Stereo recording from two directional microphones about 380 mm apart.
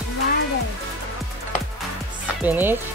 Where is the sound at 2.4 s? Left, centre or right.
Centre.